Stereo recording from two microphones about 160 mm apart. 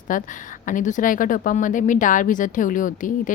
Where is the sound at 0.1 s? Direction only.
55° left (ahead or behind).